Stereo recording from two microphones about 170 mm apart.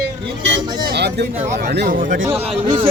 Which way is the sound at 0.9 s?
80° right.